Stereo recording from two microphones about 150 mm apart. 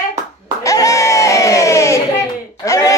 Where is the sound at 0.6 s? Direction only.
20° left (ahead or behind).